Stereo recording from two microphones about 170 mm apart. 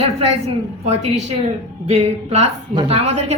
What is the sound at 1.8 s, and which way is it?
A man's voice, 40° right (ahead or behind).